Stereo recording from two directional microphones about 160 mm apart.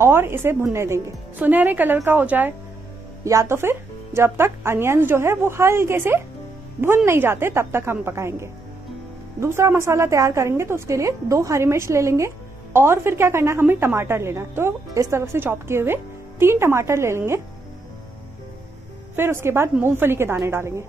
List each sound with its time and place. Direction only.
0.0 s a woman's voice: 15° right (ahead or behind)
19.1 s a woman's voice: 15° right (ahead or behind)